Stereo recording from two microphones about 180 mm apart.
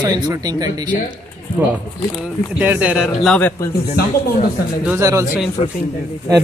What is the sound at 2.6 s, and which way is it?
Speech, 10° right (ahead or behind).